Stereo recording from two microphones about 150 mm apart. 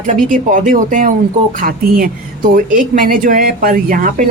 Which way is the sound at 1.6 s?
70° right (ahead or behind).